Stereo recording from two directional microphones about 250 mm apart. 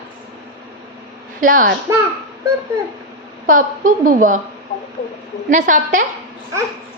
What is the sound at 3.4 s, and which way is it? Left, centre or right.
Speech, right.